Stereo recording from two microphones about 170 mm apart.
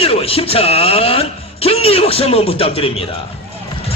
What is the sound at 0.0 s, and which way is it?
A man's voice, 35° left (ahead or behind).